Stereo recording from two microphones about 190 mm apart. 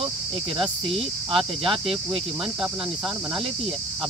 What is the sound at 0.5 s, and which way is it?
Speech, 30° right (ahead or behind).